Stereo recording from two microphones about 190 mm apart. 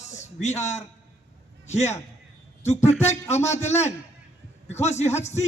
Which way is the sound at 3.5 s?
35° left (ahead or behind).